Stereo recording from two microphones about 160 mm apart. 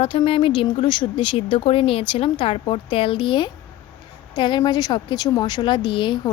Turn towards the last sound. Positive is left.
turn(degrees=30)  # may be behind; listen again after turning